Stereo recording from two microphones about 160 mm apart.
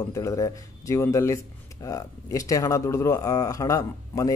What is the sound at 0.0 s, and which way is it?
Speech, 20° left (ahead or behind).